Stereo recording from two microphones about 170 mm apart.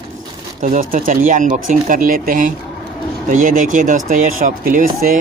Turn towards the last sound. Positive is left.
turn(degrees=-55)  # may be behind; listen again after turning